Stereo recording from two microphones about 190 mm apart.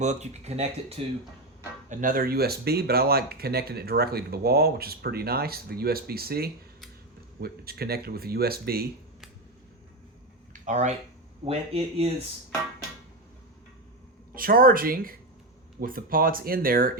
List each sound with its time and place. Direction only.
0.0 s speech: 35° right (ahead or behind)
1.9 s speech: 45° right (ahead or behind)
10.5 s a sound: 35° right (ahead or behind)
11.4 s speech: 30° right (ahead or behind)
14.3 s speech: 50° right (ahead or behind)